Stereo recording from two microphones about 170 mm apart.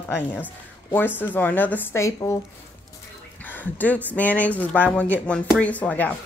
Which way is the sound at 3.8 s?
10° left (ahead or behind).